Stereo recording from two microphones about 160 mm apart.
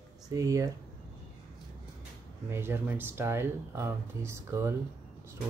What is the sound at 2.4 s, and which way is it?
Speech, 15° right (ahead or behind).